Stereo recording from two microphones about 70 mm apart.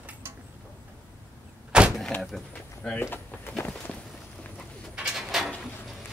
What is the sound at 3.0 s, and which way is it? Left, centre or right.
Speech, left.